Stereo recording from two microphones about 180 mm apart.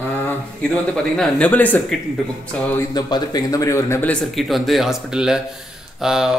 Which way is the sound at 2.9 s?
20° left (ahead or behind).